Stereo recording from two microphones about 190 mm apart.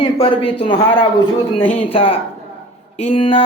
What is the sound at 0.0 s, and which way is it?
A man's voice, 25° left (ahead or behind).